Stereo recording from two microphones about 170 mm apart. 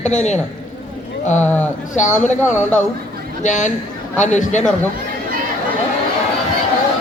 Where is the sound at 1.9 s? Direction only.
45° left (ahead or behind).